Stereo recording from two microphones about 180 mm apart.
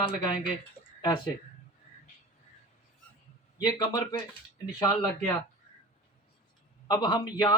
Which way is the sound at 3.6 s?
20° left (ahead or behind).